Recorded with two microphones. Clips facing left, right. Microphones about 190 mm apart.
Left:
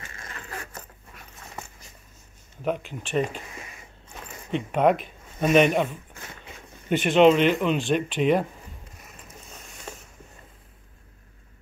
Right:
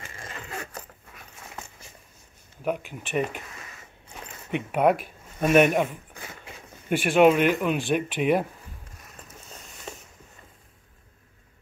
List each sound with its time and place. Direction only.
0.2 s a sound: 25° right (ahead or behind)
2.6 s speech: 10° right (ahead or behind)
4.5 s speech: 10° right (ahead or behind)
6.9 s speech: 10° right (ahead or behind)